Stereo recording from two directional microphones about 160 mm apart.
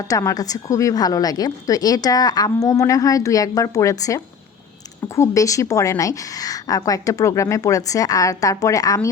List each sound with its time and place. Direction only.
0.1 s a woman's voice: 20° left (ahead or behind)